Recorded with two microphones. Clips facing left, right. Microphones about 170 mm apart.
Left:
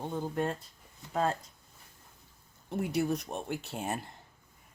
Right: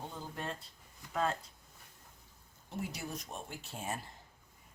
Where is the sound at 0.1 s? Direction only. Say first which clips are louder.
Left 10 dB; 55° left (ahead or behind).